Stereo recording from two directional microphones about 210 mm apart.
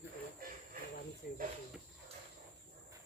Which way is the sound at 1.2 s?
45° left (ahead or behind).